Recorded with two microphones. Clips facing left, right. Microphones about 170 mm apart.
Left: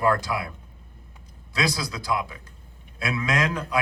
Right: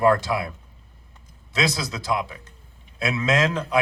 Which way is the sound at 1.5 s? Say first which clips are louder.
Right 2 dB; 25° right (ahead or behind).